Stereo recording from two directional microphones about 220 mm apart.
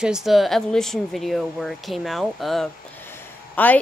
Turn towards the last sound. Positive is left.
turn(degrees=5)  # may be behind; listen again after turning